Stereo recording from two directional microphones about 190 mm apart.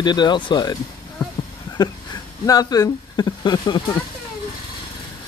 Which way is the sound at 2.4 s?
20° left (ahead or behind).